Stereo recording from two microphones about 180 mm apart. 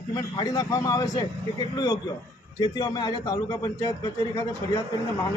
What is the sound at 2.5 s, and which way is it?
Speech, 25° left (ahead or behind).